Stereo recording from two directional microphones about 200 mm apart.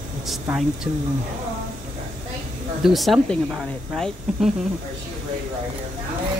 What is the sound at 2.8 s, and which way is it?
Speech, centre (ahead or behind).